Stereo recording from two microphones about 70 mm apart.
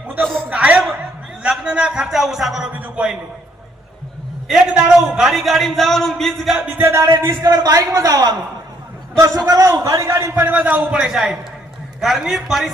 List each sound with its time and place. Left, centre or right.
0.5 s a sound: centre
1.4 s a man's voice: centre
2.7 s a man's voice: right
4.4 s a man's voice: centre
6.6 s a man's voice: right
6.8 s speech: right
7.3 s a man's voice: right
9.1 s a man's voice: right
10.3 s a man's voice: right
11.0 s a man's voice: centre